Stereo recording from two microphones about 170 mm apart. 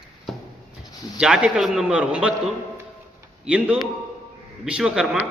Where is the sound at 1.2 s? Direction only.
5° right (ahead or behind).